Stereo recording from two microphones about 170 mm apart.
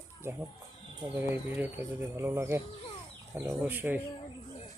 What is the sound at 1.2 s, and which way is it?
Speech, 10° right (ahead or behind).